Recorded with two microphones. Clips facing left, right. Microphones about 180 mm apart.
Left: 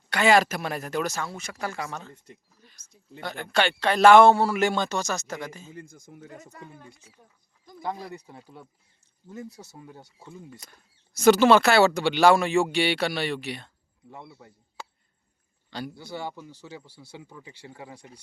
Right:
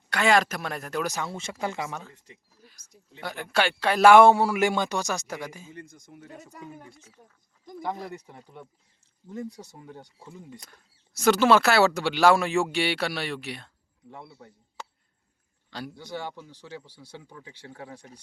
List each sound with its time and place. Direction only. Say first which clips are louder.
0.1 s speech: left 2 dB; centre (ahead or behind)
1.0 s speech: even; 20° right (ahead or behind)
2.6 s a sound: right 3 dB; 5° right (ahead or behind)
3.2 s speech: left 1 dB; 5° right (ahead or behind)
7.8 s speech: even; 10° left (ahead or behind)
15.7 s speech: left 1 dB; 5° left (ahead or behind)